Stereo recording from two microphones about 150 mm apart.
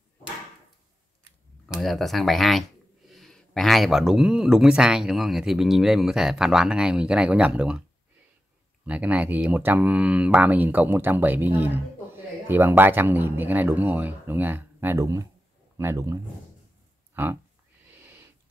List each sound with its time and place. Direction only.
1.8 s speech: centre (ahead or behind)
8.8 s speech: 10° right (ahead or behind)